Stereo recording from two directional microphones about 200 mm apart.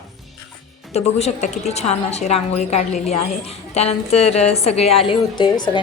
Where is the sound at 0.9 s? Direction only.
30° left (ahead or behind).